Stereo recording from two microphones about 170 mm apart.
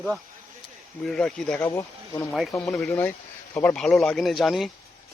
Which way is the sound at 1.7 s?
20° left (ahead or behind).